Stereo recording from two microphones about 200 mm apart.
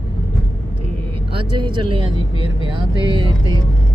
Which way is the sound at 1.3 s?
25° right (ahead or behind).